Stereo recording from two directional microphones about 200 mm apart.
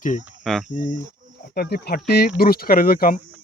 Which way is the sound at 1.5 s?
55° left (ahead or behind).